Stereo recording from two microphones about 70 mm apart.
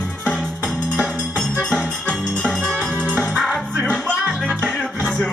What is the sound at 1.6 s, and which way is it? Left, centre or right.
Music, centre.